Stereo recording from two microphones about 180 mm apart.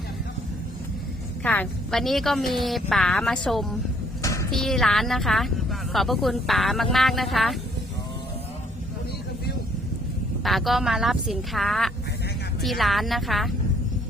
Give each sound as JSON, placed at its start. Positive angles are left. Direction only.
{"t": 1.5, "sound": "speech", "side_deg": 5}
{"t": 4.2, "sound": "a sound", "side_deg": 15}
{"t": 4.5, "sound": "speech", "side_deg": 0}
{"t": 10.4, "sound": "speech", "side_deg": 0}